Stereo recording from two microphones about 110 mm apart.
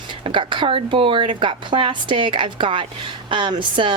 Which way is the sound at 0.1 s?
50° right (ahead or behind).